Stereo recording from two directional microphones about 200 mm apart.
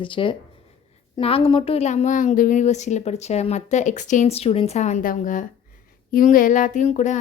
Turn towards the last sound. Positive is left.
turn(degrees=35)  # may be behind; listen again after turning